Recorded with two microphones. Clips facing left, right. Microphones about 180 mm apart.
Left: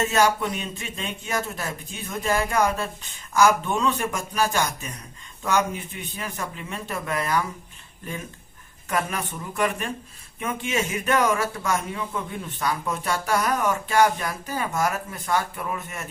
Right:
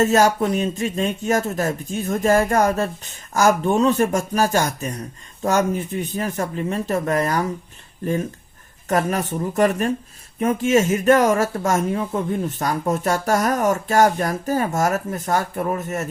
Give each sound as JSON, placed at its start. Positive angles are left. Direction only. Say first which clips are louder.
{"t": 0.0, "sound": "speech", "louder": "right 5 dB", "side_deg": -40}
{"t": 8.9, "sound": "speech", "louder": "right 7 dB", "side_deg": -40}